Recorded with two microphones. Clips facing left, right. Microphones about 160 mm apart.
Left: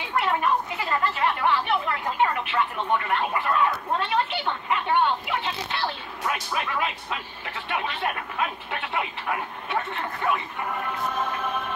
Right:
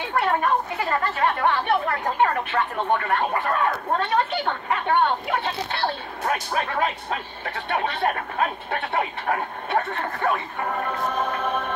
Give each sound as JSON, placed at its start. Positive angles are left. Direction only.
{"t": 0.1, "sound": "speech", "side_deg": -40}
{"t": 11.4, "sound": "chant", "side_deg": -55}